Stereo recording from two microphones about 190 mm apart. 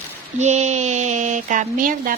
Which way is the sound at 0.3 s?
40° right (ahead or behind).